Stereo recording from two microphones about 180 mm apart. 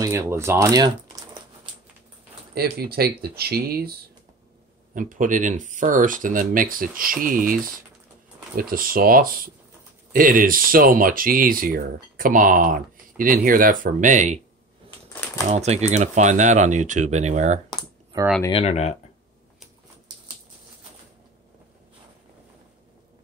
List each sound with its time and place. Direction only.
0.0 s speech: 15° right (ahead or behind)
2.5 s speech: 60° right (ahead or behind)
4.9 s speech: 45° right (ahead or behind)
8.5 s speech: 50° right (ahead or behind)
15.4 s speech: 40° right (ahead or behind)
18.1 s speech: 20° right (ahead or behind)
18.5 s speech: 35° left (ahead or behind)